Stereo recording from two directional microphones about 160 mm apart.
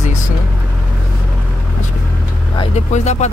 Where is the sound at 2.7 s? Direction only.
45° left (ahead or behind).